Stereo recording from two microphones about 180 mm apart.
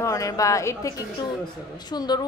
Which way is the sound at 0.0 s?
20° left (ahead or behind).